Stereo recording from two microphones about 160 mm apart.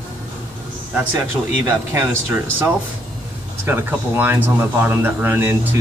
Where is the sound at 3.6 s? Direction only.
15° right (ahead or behind).